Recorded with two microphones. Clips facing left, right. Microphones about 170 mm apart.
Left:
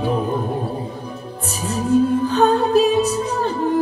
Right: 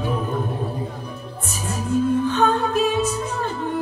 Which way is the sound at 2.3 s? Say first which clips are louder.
Left 4 dB; 35° left (ahead or behind).